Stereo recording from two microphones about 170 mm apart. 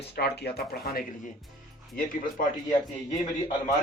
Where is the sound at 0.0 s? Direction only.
75° left (ahead or behind).